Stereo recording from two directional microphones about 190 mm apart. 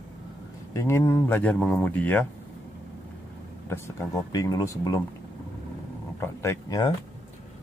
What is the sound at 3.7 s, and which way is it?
Speech, 15° left (ahead or behind).